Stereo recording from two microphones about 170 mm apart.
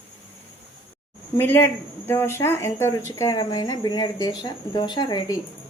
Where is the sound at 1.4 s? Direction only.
15° left (ahead or behind).